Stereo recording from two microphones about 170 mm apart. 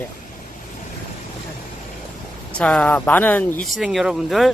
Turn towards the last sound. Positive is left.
turn(degrees=0)  # may be behind; listen again after turning